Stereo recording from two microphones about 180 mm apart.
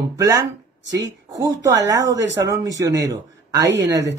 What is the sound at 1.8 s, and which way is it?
Speech, 80° right.